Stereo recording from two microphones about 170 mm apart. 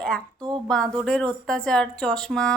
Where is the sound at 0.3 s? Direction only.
25° right (ahead or behind).